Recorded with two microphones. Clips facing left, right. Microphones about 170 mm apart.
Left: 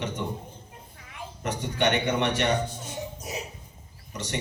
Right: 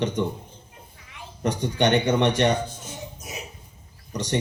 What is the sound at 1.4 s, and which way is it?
A man's voice, 35° right (ahead or behind).